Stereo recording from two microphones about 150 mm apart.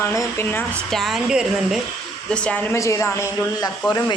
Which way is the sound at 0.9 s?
Centre (ahead or behind).